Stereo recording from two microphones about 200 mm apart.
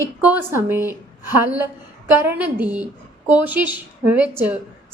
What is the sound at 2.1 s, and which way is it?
A woman's voice, 10° right (ahead or behind).